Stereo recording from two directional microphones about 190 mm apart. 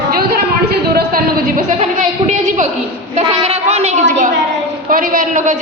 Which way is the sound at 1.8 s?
40° right (ahead or behind).